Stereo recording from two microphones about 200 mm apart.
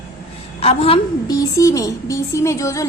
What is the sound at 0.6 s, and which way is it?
Speech, 30° left (ahead or behind).